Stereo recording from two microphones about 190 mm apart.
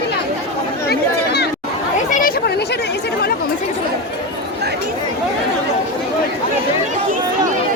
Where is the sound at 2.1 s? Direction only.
50° left (ahead or behind).